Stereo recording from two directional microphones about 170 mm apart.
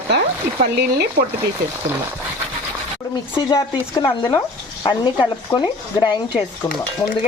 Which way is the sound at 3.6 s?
20° left (ahead or behind).